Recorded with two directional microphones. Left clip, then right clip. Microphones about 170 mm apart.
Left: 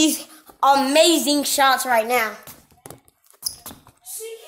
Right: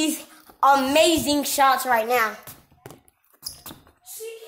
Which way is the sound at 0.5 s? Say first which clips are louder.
Left 2 dB; 5° left (ahead or behind).